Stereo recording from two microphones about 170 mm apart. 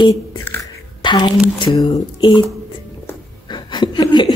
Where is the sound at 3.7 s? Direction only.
25° left (ahead or behind).